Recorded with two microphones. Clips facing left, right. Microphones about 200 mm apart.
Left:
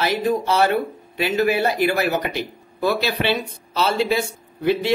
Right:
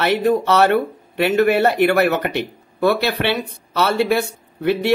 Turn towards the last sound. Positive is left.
turn(degrees=-60)  # may be behind; listen again after turning